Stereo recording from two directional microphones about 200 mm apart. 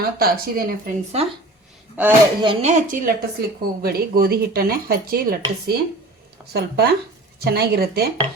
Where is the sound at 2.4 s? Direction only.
30° right (ahead or behind).